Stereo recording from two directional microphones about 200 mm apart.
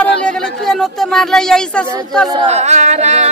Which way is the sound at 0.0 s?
5° left (ahead or behind).